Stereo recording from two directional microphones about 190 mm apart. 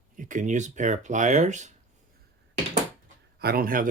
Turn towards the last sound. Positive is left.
turn(degrees=-50)  # may be behind; listen again after turning